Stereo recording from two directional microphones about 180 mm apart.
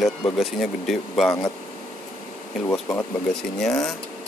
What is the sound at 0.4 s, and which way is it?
Speech, centre (ahead or behind).